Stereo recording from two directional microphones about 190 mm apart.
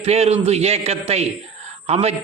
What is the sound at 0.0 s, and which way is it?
A man's voice, 35° right (ahead or behind).